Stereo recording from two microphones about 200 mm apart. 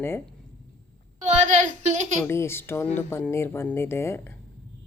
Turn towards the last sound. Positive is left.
turn(degrees=10)  # may be behind; listen again after turning